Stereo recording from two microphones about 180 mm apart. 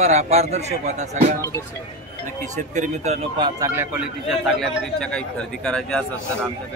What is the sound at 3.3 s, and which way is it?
Speech, 25° right (ahead or behind).